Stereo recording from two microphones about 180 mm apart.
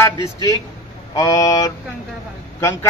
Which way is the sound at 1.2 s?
20° left (ahead or behind).